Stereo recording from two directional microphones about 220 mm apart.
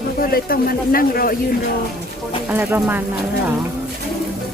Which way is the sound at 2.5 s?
10° right (ahead or behind).